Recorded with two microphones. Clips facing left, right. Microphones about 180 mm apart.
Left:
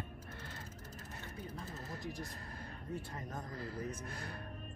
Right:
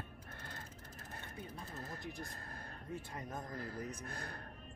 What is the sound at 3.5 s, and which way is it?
Speech, 50° right (ahead or behind).